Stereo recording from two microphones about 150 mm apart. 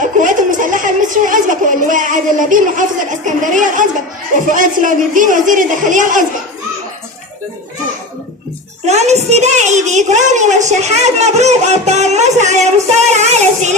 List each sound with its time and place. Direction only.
0.2 s a child's voice: 60° right (ahead or behind)
8.9 s a woman's voice: 50° right (ahead or behind)